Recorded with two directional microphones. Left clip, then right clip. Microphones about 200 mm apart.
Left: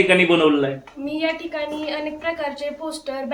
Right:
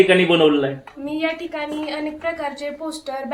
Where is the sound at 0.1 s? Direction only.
25° right (ahead or behind).